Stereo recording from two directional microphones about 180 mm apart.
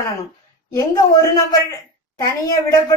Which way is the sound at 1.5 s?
20° left (ahead or behind).